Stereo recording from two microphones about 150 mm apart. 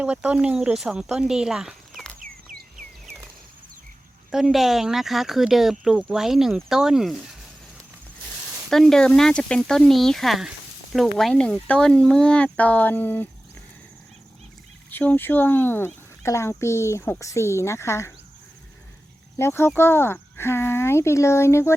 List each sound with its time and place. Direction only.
0.0 s speech: 10° right (ahead or behind)
2.1 s a sound: 65° right (ahead or behind)
4.3 s speech: centre (ahead or behind)
8.7 s speech: 5° left (ahead or behind)
14.8 s speech: 10° left (ahead or behind)
19.4 s speech: 15° left (ahead or behind)